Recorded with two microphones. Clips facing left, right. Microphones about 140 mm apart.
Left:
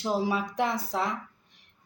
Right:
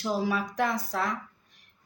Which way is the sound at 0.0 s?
25° left (ahead or behind).